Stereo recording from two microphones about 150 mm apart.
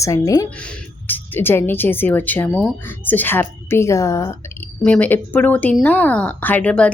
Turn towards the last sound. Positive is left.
turn(degrees=10)  # may be behind; listen again after turning